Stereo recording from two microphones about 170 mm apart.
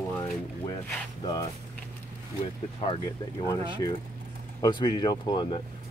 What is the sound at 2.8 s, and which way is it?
Speech, 30° left (ahead or behind).